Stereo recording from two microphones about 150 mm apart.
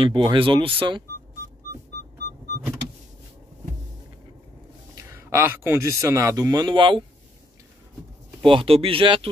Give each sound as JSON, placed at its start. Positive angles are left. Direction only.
{"t": 0.0, "sound": "speech", "side_deg": -35}
{"t": 5.1, "sound": "speech", "side_deg": -15}
{"t": 8.4, "sound": "speech", "side_deg": -35}